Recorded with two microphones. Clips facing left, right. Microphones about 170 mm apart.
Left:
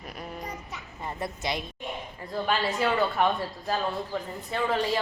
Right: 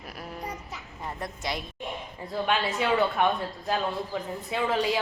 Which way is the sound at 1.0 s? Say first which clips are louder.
Left 2 dB; centre (ahead or behind).